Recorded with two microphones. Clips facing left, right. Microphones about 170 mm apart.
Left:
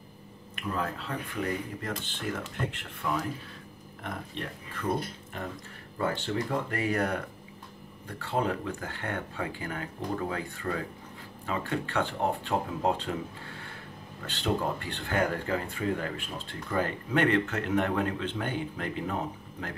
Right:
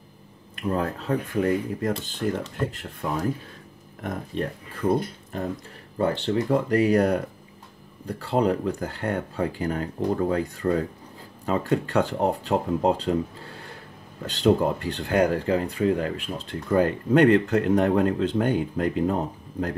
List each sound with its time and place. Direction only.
0.6 s speech: 40° right (ahead or behind)
6.3 s speech: 40° right (ahead or behind)
14.2 s speech: 40° right (ahead or behind)